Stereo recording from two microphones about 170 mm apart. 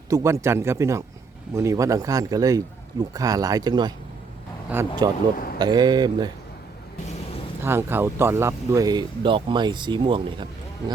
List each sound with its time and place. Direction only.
0.1 s speech: 15° right (ahead or behind)
4.7 s speech: 10° right (ahead or behind)
5.5 s speech: 25° right (ahead or behind)
7.6 s speech: 15° right (ahead or behind); by 10.3 s 30° right (ahead or behind)